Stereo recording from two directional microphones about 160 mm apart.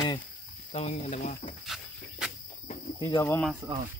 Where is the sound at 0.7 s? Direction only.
40° left (ahead or behind).